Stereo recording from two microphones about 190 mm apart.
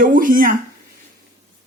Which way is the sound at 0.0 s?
45° right (ahead or behind).